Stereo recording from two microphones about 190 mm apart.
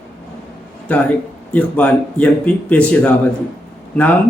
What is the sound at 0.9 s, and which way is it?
A man's voice, 5° left (ahead or behind).